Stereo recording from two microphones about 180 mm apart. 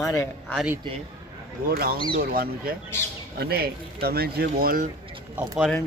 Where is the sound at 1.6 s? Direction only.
60° right (ahead or behind).